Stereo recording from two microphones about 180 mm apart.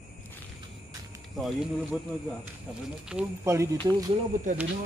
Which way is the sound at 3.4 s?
15° right (ahead or behind).